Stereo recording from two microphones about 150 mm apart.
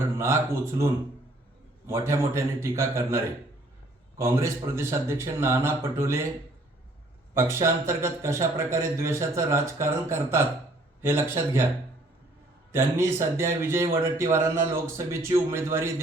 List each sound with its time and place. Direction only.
0.2 s a man's voice: 15° right (ahead or behind)
1.9 s a man's voice: 20° right (ahead or behind)
7.3 s a man's voice: 20° right (ahead or behind)
12.7 s a man's voice: 15° right (ahead or behind)